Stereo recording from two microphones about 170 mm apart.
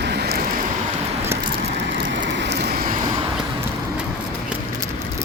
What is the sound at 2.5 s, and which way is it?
Vehicle, 70° right (ahead or behind).